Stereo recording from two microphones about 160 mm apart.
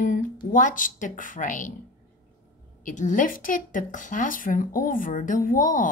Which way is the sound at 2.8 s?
50° left (ahead or behind).